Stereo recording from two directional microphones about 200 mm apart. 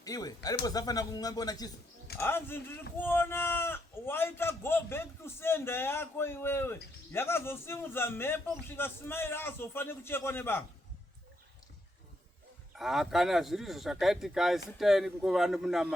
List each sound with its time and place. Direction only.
0.0 s speech: 20° left (ahead or behind)
12.7 s speech: centre (ahead or behind)